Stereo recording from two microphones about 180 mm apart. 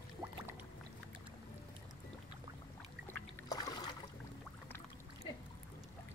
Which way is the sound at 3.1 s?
20° left (ahead or behind).